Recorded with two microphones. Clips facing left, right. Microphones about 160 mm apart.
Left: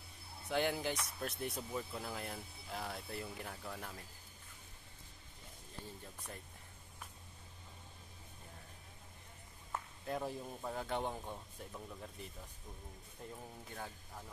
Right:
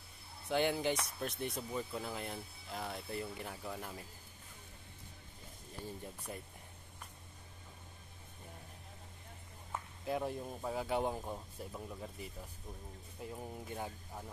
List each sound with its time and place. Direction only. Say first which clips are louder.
0.5 s speech: right 3 dB; centre (ahead or behind)
6.3 s speech: right 5 dB; 10° right (ahead or behind)
9.7 s speech: right 3 dB; 5° right (ahead or behind)
13.4 s speech: right 7 dB; 15° right (ahead or behind)